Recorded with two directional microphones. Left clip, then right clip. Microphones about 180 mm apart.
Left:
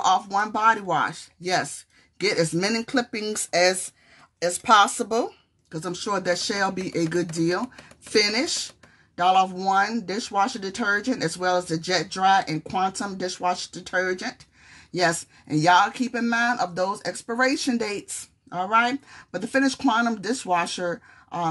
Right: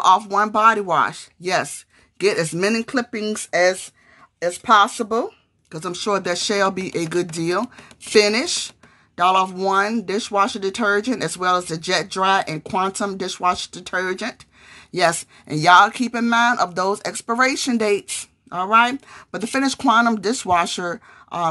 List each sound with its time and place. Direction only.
0.0 s a woman's voice: 30° right (ahead or behind); by 5.3 s 5° right (ahead or behind)
5.7 s speech: 25° right (ahead or behind)